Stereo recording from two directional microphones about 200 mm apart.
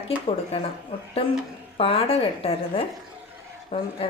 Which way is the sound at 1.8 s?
25° left (ahead or behind).